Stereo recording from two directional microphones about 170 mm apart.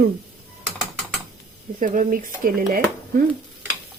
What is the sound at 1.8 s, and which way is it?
Speech, 50° right (ahead or behind).